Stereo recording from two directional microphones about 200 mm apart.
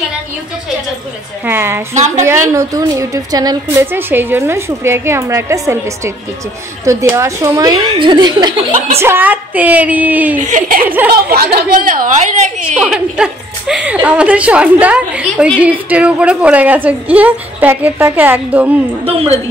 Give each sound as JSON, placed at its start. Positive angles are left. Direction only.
{"t": 1.4, "sound": "a woman's voice", "side_deg": -10}
{"t": 2.0, "sound": "speech", "side_deg": -35}
{"t": 2.5, "sound": "a woman's voice", "side_deg": -15}
{"t": 8.7, "sound": "speech", "side_deg": -35}
{"t": 9.0, "sound": "a woman's voice", "side_deg": -10}
{"t": 10.4, "sound": "a woman's voice", "side_deg": -40}
{"t": 12.7, "sound": "a woman's voice", "side_deg": 0}
{"t": 19.0, "sound": "speech", "side_deg": -30}